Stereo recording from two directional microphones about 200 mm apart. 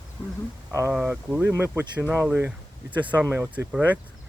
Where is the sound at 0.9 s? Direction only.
5° right (ahead or behind); by 2.1 s 20° right (ahead or behind).